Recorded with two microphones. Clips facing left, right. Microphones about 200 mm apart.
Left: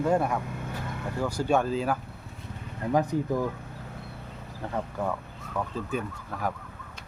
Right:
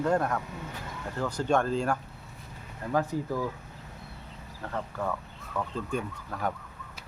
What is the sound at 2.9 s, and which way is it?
Speech, 20° left (ahead or behind).